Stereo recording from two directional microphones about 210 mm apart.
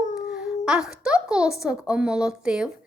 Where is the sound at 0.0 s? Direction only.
35° left (ahead or behind).